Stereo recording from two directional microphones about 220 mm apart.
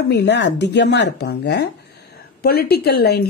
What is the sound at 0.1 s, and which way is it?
A woman's voice, 50° left (ahead or behind).